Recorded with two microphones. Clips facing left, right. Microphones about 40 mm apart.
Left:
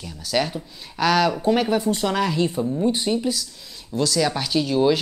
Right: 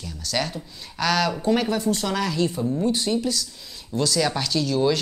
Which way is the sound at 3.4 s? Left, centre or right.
Centre.